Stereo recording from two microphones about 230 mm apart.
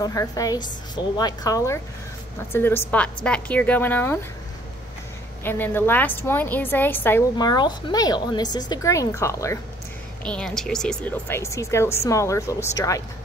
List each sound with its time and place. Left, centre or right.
0.0 s a woman's voice: centre
5.4 s a woman's voice: centre